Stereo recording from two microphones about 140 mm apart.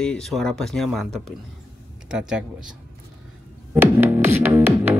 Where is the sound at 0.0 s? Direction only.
5° left (ahead or behind).